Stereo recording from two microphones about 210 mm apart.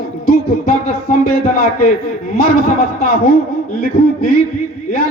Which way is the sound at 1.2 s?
40° left (ahead or behind).